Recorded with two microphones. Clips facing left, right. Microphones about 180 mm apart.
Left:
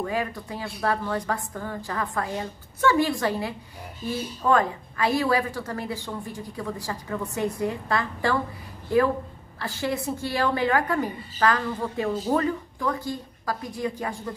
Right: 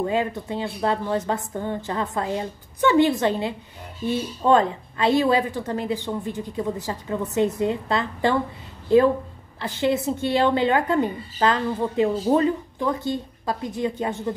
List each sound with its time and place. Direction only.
0.0 s a woman's voice: 25° right (ahead or behind)